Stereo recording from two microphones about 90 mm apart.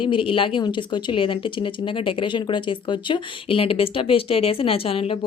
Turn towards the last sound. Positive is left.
turn(degrees=90)